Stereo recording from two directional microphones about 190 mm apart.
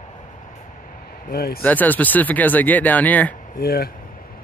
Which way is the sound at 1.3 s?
55° left (ahead or behind).